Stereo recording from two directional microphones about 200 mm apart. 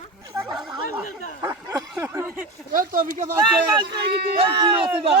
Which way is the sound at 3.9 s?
55° right (ahead or behind).